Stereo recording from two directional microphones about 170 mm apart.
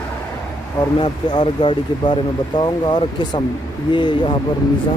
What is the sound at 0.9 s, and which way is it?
Speech, 25° left (ahead or behind).